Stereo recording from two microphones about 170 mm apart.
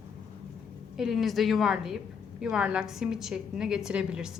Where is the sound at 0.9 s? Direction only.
Centre (ahead or behind).